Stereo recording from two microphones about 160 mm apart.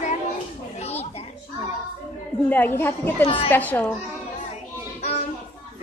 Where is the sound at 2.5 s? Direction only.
15° left (ahead or behind).